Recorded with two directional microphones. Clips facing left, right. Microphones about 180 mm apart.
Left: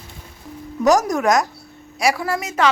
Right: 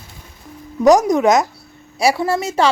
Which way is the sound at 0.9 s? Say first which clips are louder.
Right 4 dB; 20° right (ahead or behind).